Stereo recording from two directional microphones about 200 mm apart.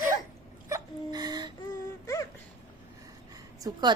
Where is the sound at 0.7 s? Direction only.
15° right (ahead or behind).